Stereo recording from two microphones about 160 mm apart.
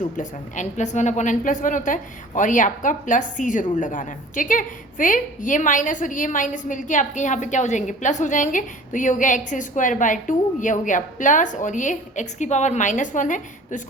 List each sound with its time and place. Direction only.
0.2 s a woman's voice: 50° left (ahead or behind)